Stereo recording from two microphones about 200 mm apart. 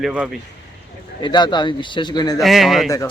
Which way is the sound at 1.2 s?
20° left (ahead or behind).